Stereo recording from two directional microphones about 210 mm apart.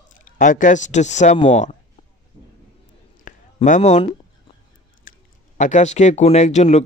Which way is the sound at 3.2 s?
35° left (ahead or behind).